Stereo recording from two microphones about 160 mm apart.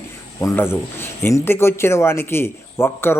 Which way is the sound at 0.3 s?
20° left (ahead or behind).